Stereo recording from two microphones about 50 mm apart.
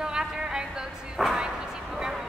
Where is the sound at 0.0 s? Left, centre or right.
Centre.